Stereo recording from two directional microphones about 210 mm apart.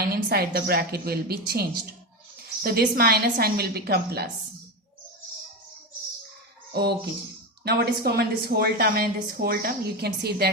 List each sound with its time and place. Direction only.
0.0 s a woman's voice: 50° right (ahead or behind)
2.6 s a woman's voice: 50° right (ahead or behind)
6.7 s a woman's voice: 50° right (ahead or behind)